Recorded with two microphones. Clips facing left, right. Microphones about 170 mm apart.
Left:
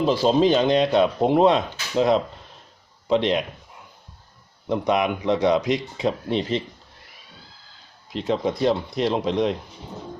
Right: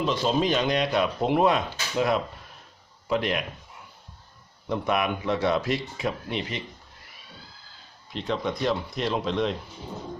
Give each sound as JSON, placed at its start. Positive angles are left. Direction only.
{"t": 0.0, "sound": "speech", "side_deg": 35}
{"t": 4.7, "sound": "speech", "side_deg": 20}
{"t": 8.3, "sound": "speech", "side_deg": 30}